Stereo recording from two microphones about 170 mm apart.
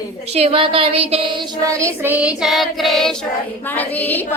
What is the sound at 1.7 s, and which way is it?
Child singing, 15° right (ahead or behind).